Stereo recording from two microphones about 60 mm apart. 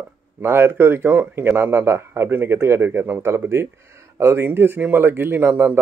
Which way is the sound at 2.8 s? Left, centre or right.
Right.